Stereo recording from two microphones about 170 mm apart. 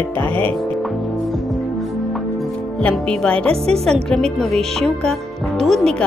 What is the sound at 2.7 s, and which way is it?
Speech, 5° left (ahead or behind).